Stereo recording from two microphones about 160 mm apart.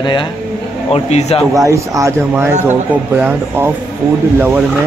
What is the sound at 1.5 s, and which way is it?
Speech, 20° right (ahead or behind).